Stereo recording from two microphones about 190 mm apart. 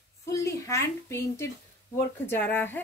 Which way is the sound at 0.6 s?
15° left (ahead or behind).